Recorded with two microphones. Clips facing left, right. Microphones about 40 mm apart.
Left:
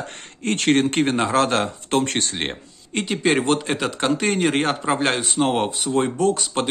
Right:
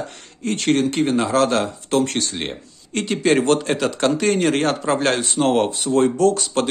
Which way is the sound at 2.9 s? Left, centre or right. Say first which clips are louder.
Right 2 dB; centre.